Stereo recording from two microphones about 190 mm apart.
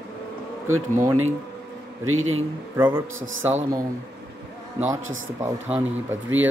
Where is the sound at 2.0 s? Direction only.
90° right.